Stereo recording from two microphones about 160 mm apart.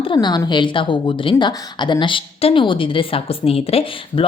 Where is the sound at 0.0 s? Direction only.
30° left (ahead or behind).